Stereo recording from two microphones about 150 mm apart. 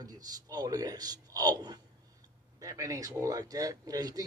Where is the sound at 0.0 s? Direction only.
25° right (ahead or behind).